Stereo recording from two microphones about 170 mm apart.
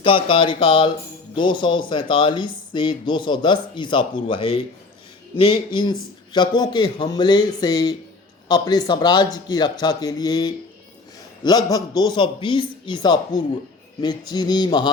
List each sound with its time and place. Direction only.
0.0 s speech: 30° left (ahead or behind)